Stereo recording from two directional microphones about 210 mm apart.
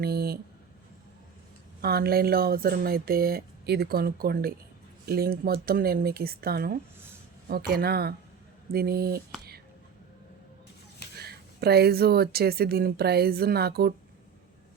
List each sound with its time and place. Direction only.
0.0 s a sound: 45° right (ahead or behind)
1.8 s speech: 50° right (ahead or behind)
11.2 s speech: 50° right (ahead or behind)